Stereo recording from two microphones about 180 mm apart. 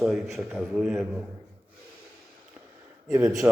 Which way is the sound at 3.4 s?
10° right (ahead or behind).